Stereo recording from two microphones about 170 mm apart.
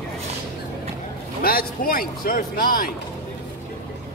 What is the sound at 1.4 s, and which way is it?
Speech, 60° left (ahead or behind).